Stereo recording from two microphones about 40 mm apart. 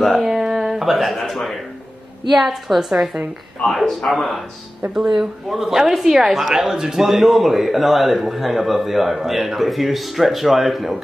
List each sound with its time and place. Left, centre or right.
0.2 s a sound: centre
1.1 s a woman's voice: centre
3.6 s a man's voice: left
4.1 s a woman's voice: centre
4.9 s a woman's voice: centre